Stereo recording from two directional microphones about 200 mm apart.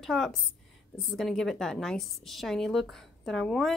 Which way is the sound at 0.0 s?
Centre (ahead or behind).